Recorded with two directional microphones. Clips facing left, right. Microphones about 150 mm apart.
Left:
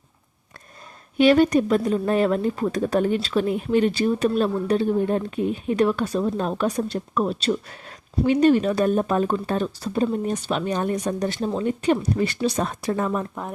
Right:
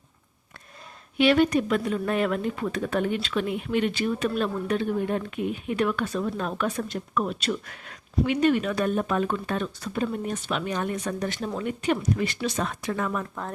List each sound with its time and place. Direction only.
1.2 s speech: 40° left (ahead or behind)